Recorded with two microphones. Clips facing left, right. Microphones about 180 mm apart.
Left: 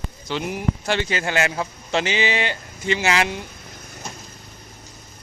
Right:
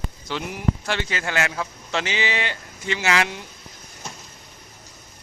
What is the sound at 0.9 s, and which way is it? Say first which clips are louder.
A man's voice: left 4 dB; 25° left (ahead or behind).